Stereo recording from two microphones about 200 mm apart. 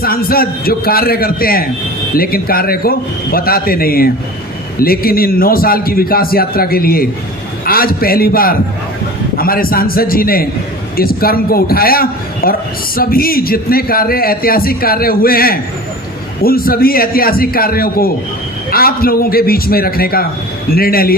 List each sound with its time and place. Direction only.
0.0 s a man's voice: 50° left (ahead or behind)